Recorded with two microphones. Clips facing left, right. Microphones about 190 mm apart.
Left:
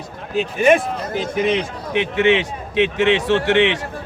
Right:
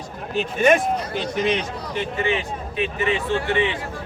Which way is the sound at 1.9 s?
75° left (ahead or behind).